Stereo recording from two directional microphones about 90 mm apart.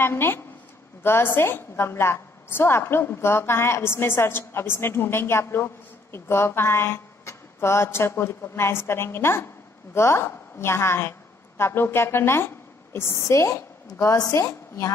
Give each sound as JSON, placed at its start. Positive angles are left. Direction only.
{"t": 0.0, "sound": "a woman's voice", "side_deg": 25}